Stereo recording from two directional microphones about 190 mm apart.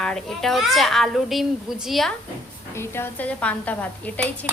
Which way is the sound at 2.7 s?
10° left (ahead or behind).